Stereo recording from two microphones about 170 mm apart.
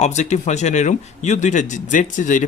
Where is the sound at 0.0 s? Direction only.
40° left (ahead or behind).